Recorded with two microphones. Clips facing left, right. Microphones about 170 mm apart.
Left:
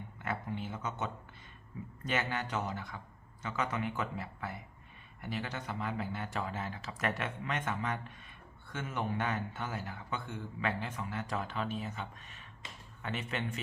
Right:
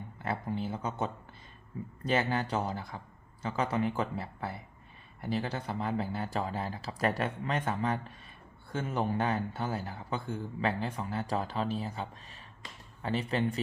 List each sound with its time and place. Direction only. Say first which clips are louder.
0.2 s a man's voice: right 4 dB; 35° right (ahead or behind)
12.6 s a sound: right 1 dB; 25° left (ahead or behind)
13.0 s a man's voice: right 7 dB; 35° right (ahead or behind)